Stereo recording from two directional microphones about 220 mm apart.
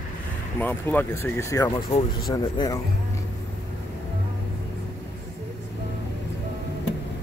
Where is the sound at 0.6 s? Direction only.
10° left (ahead or behind).